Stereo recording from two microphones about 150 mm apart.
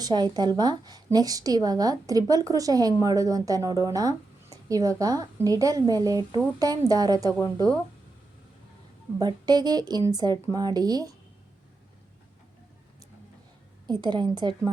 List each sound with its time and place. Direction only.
0.0 s a woman's voice: 30° right (ahead or behind)
9.1 s a woman's voice: 25° right (ahead or behind)
13.8 s a woman's voice: 30° right (ahead or behind)